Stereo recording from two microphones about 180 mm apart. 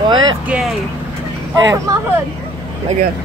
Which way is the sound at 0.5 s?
5° right (ahead or behind).